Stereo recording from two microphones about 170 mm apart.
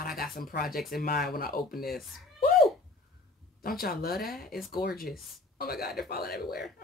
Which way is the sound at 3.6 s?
60° left (ahead or behind).